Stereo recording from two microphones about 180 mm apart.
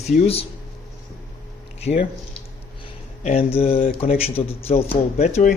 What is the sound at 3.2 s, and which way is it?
A man's voice, 35° left (ahead or behind).